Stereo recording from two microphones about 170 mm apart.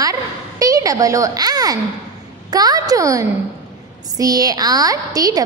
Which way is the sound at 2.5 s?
20° right (ahead or behind).